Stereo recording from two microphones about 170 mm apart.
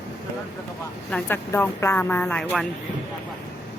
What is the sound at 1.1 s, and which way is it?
Speech, 10° left (ahead or behind).